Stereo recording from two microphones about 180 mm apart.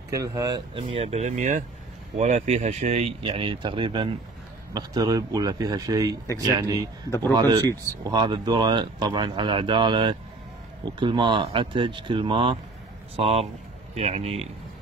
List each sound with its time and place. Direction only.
0.1 s speech: 20° right (ahead or behind); by 14.5 s 35° right (ahead or behind)